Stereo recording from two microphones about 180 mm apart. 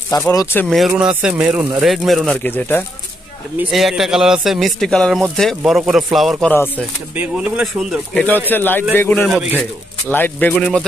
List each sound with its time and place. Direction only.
0.1 s speech: 20° left (ahead or behind)
0.7 s speech: centre (ahead or behind)
3.5 s speech: centre (ahead or behind)
9.3 s speech: 5° right (ahead or behind)
10.0 s speech: 10° left (ahead or behind)